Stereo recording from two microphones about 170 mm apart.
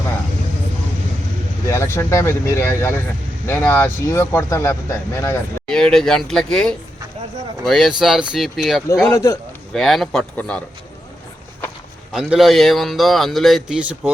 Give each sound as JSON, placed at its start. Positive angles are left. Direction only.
{"t": 1.6, "sound": "speech", "side_deg": 15}
{"t": 5.6, "sound": "speech", "side_deg": 5}
{"t": 9.1, "sound": "speech", "side_deg": 20}
{"t": 9.7, "sound": "speech", "side_deg": 0}
{"t": 12.1, "sound": "speech", "side_deg": 0}